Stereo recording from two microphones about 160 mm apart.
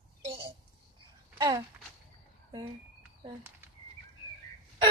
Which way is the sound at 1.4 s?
20° right (ahead or behind).